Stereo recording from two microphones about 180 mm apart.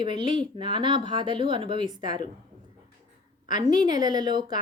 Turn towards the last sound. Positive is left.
turn(degrees=-25)  # may be behind; listen again after turning